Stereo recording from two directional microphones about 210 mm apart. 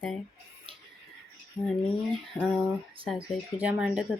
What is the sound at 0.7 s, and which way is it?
Music, 25° right (ahead or behind).